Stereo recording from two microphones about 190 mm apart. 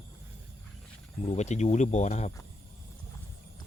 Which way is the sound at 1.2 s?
35° left (ahead or behind).